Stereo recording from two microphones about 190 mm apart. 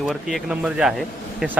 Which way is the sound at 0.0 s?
Centre (ahead or behind).